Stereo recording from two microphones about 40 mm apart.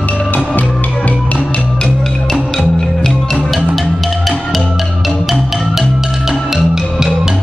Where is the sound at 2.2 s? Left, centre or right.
Centre.